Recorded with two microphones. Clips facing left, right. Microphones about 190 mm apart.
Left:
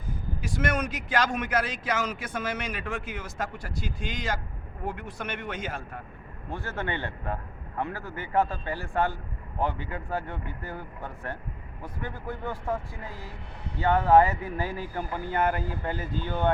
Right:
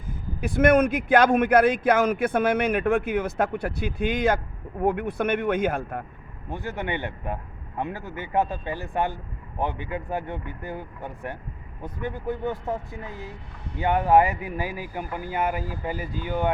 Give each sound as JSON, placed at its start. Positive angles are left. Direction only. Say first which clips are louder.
{"t": 0.4, "sound": "a man's voice", "louder": "right 11 dB", "side_deg": -55}
{"t": 6.5, "sound": "speech", "louder": "right 3 dB", "side_deg": -15}